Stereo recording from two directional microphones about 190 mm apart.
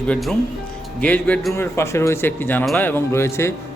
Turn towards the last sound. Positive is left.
turn(degrees=15)  # may be behind; listen again after turning